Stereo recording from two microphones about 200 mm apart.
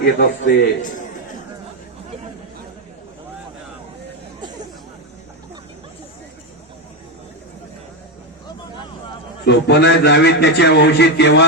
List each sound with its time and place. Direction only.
0.0 s a man's voice: 50° left (ahead or behind)
9.5 s a man's voice: 60° left (ahead or behind)